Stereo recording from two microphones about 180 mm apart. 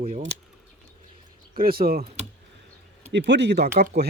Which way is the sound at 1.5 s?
55° right (ahead or behind).